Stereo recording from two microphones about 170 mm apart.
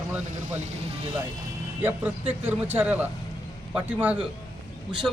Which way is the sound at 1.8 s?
10° right (ahead or behind).